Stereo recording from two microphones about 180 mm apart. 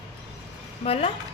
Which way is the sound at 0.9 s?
35° left (ahead or behind).